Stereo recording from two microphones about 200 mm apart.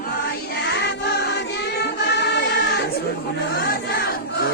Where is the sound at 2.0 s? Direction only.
60° left (ahead or behind).